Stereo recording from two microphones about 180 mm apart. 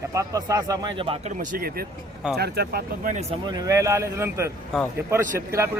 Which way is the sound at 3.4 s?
20° right (ahead or behind).